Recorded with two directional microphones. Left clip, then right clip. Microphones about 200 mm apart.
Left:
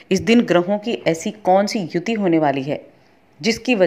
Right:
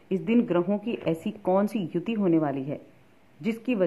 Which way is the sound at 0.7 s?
15° left (ahead or behind).